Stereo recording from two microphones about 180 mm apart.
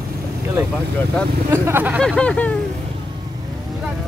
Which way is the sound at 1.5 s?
10° right (ahead or behind).